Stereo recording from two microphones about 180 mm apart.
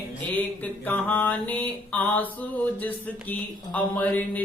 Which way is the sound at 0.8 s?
10° left (ahead or behind).